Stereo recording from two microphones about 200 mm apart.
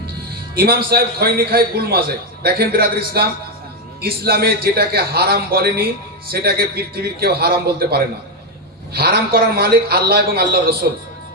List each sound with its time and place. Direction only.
0.5 s a man's voice: 50° right (ahead or behind)